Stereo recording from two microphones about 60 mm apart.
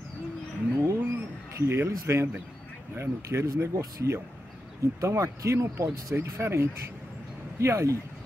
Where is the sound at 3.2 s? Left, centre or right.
Right.